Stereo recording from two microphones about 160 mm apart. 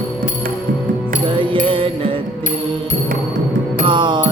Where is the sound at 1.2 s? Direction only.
30° right (ahead or behind).